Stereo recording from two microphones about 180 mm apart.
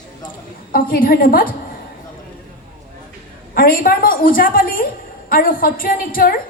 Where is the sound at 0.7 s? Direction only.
55° left (ahead or behind).